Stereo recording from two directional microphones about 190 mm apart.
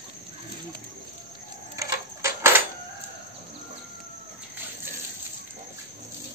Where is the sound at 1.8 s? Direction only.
15° right (ahead or behind).